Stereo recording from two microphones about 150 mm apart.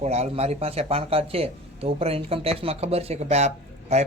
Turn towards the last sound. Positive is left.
turn(degrees=-50)  # may be behind; listen again after turning